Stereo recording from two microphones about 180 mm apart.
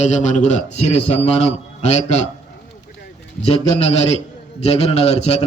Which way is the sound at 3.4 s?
35° left (ahead or behind).